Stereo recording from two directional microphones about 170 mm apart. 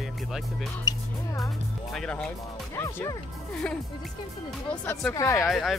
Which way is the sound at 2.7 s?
15° left (ahead or behind).